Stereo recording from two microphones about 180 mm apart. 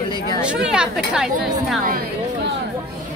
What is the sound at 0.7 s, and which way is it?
Speech, 5° right (ahead or behind).